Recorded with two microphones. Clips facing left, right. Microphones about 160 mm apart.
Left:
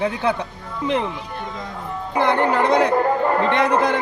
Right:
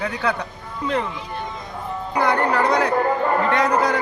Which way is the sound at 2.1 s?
25° left (ahead or behind).